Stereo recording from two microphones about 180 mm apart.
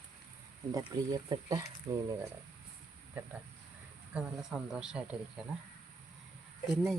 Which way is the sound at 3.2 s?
10° right (ahead or behind).